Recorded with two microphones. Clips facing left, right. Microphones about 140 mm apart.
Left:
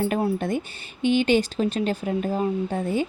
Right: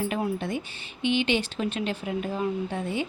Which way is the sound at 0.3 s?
45° left (ahead or behind).